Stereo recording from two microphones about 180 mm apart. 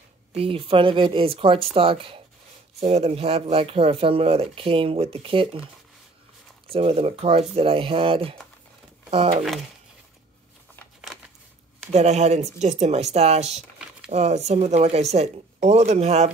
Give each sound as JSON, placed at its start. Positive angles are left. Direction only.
{"t": 0.3, "sound": "speech", "side_deg": -30}
{"t": 6.7, "sound": "speech", "side_deg": -35}
{"t": 11.9, "sound": "speech", "side_deg": -40}